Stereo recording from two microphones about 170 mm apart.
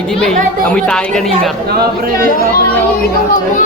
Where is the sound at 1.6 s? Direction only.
65° right (ahead or behind).